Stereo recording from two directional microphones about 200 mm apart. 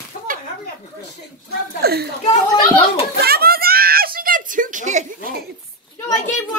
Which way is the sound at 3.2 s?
50° right (ahead or behind).